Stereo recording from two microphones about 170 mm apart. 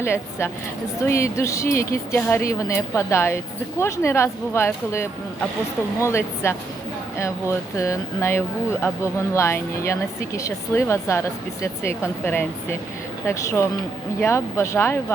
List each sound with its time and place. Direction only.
0.0 s speech: 15° left (ahead or behind)